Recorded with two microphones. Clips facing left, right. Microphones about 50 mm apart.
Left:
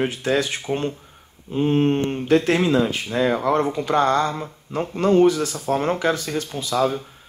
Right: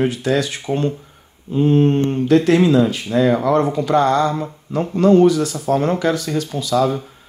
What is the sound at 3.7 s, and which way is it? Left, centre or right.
Speech, left.